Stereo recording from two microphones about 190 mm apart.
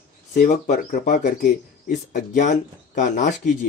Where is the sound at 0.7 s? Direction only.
40° left (ahead or behind).